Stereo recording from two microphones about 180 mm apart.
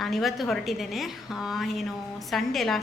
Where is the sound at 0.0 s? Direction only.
Centre (ahead or behind).